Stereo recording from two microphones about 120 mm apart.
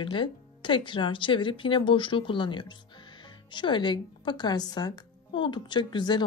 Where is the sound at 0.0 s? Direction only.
45° left (ahead or behind).